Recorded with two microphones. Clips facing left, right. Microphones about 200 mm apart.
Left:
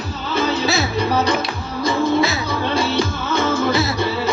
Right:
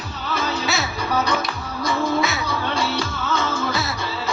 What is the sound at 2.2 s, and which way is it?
Music, 30° left (ahead or behind).